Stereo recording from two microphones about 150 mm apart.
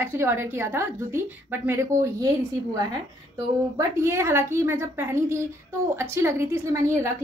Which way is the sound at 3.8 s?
15° right (ahead or behind).